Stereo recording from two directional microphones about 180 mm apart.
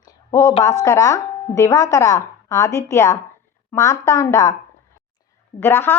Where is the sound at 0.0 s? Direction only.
20° left (ahead or behind).